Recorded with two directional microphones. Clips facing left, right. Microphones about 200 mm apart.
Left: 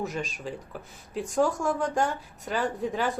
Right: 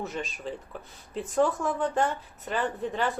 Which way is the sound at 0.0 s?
Centre (ahead or behind).